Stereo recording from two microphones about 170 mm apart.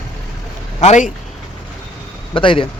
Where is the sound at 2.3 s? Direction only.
30° left (ahead or behind).